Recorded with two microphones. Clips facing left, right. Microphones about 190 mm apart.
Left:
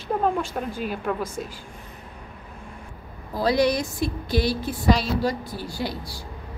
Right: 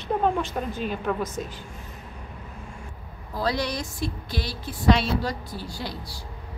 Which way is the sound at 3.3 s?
10° left (ahead or behind).